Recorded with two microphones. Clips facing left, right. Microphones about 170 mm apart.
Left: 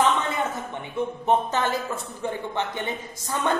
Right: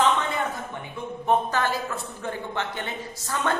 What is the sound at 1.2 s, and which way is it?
A woman's voice, 20° left (ahead or behind).